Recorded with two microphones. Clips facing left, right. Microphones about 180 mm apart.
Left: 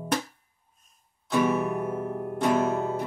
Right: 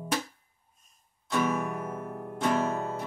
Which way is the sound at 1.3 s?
5° left (ahead or behind).